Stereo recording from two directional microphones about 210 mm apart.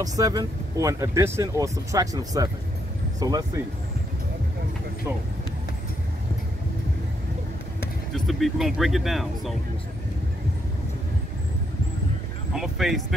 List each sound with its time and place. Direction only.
0.0 s speech: 15° right (ahead or behind)
8.3 s speech: centre (ahead or behind)
12.5 s speech: centre (ahead or behind)